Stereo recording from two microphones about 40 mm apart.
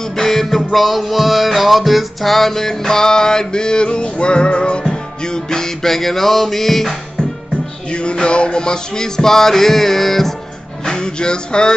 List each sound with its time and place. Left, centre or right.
0.1 s music: centre
7.9 s music: left; by 10.3 s centre
10.9 s music: left